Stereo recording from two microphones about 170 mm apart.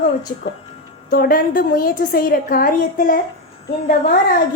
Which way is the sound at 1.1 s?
60° left (ahead or behind).